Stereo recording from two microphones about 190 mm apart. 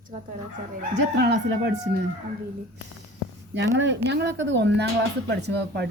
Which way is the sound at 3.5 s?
70° right (ahead or behind).